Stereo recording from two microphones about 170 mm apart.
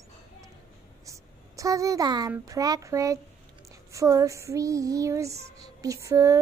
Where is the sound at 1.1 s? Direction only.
20° right (ahead or behind).